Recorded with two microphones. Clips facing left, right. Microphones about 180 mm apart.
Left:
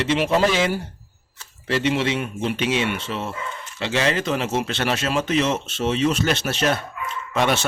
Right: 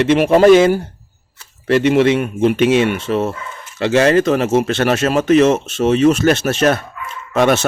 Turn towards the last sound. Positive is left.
turn(degrees=-45)  # may be behind; listen again after turning